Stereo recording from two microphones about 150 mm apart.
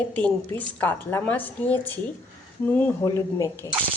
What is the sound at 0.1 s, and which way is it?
A woman's voice, 10° left (ahead or behind).